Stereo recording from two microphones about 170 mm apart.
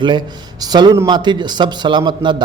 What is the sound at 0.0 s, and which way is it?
A man's voice, 25° right (ahead or behind).